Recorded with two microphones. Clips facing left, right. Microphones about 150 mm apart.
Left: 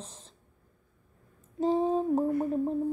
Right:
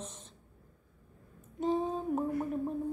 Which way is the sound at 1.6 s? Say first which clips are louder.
Left 5 dB; 30° left (ahead or behind).